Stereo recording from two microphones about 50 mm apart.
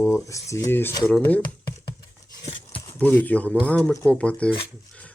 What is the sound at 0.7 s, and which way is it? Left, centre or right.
Speech, left.